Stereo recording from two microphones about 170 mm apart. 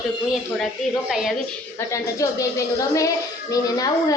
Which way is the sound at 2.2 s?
20° left (ahead or behind).